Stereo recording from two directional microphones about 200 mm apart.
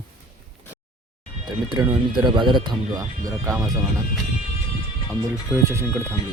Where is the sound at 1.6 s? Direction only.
20° right (ahead or behind).